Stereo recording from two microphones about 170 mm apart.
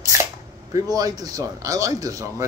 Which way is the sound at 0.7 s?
20° right (ahead or behind).